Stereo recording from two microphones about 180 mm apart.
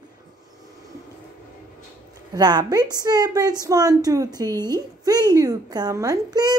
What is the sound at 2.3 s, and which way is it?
A woman's voice, 20° right (ahead or behind).